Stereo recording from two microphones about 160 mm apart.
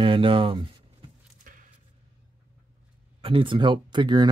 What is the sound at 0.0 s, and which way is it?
Speech, 35° right (ahead or behind).